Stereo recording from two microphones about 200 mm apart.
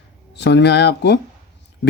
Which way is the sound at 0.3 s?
60° left (ahead or behind).